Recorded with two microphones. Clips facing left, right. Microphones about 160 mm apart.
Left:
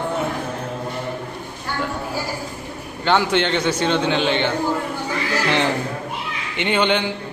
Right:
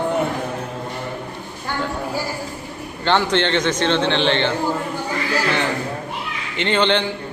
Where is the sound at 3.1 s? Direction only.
10° left (ahead or behind).